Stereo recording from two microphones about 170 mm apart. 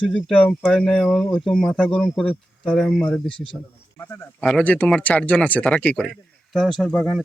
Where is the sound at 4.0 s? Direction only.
15° left (ahead or behind).